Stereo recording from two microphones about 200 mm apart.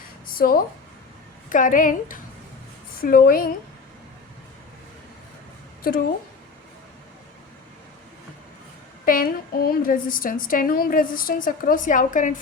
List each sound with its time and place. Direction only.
0.3 s a woman's voice: 45° left (ahead or behind)
5.8 s a woman's voice: 45° left (ahead or behind)
9.0 s a woman's voice: 45° left (ahead or behind)